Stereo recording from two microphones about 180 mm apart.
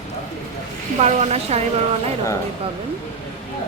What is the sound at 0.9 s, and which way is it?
Speech, 35° right (ahead or behind).